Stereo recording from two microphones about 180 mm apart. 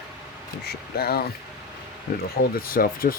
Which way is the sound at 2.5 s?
55° left (ahead or behind).